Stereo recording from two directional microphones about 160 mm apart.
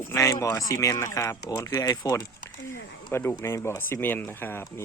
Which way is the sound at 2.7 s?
60° left (ahead or behind).